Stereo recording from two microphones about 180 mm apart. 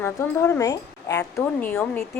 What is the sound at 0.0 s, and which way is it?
Speech, 15° left (ahead or behind).